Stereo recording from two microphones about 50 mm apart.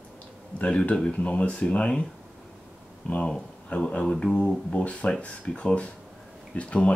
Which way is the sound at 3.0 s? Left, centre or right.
Left.